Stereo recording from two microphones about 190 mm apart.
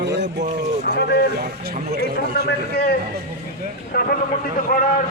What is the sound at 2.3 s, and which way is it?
Speech, 55° left (ahead or behind).